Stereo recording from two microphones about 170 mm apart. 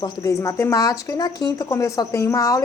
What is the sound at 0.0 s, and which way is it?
A woman's voice, 20° left (ahead or behind).